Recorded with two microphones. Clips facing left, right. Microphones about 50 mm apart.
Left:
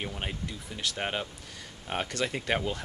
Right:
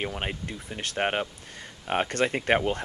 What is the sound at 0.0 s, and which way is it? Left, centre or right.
Speech, right.